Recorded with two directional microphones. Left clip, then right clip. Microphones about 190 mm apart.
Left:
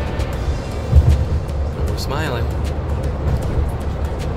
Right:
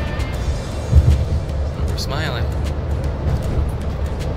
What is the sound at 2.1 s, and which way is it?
Speech, 30° left (ahead or behind).